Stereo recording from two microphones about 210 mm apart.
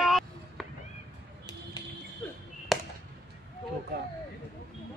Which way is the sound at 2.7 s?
Centre (ahead or behind).